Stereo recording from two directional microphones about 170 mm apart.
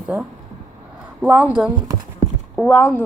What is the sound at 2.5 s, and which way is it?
Speech, 5° left (ahead or behind).